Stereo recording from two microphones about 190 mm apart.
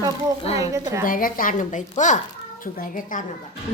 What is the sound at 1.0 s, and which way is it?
A woman's voice, 45° left (ahead or behind).